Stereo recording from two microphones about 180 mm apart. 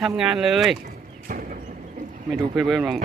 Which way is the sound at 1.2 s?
50° right (ahead or behind).